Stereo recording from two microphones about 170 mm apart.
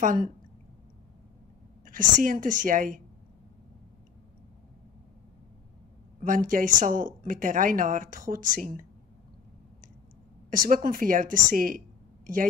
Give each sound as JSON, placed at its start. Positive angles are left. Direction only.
{"t": 0.0, "sound": "a woman's voice", "side_deg": -50}
{"t": 1.9, "sound": "a woman's voice", "side_deg": -50}
{"t": 6.2, "sound": "a woman's voice", "side_deg": -50}
{"t": 10.5, "sound": "a woman's voice", "side_deg": -55}